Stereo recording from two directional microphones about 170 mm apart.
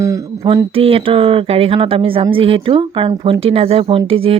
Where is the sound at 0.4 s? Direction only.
35° right (ahead or behind).